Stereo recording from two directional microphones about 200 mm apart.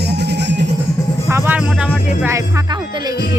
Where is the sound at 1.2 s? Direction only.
10° right (ahead or behind).